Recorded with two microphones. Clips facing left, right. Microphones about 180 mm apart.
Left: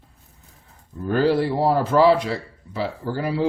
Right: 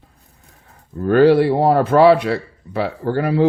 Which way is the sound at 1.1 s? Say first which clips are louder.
Right 7 dB; 65° right (ahead or behind).